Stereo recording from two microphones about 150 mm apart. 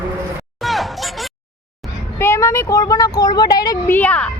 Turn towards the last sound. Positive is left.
turn(degrees=10)  # may be behind; listen again after turning